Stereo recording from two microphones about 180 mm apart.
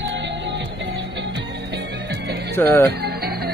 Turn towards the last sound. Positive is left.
turn(degrees=-60)  # may be behind; listen again after turning